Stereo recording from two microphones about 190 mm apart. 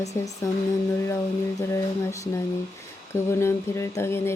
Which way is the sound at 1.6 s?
15° left (ahead or behind).